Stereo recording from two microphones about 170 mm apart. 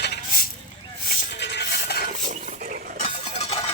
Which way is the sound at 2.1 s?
50° right (ahead or behind).